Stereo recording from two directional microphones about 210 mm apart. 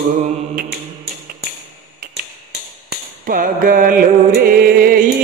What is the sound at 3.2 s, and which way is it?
Music, 40° right (ahead or behind).